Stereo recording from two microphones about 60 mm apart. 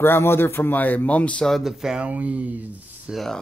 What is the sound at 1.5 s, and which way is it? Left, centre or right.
Speech, centre.